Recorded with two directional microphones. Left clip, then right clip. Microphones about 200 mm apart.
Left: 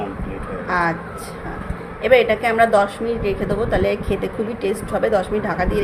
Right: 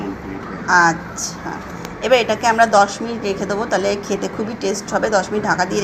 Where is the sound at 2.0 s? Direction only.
Centre (ahead or behind).